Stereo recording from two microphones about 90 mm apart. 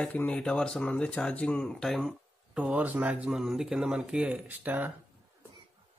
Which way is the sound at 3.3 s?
5° right (ahead or behind).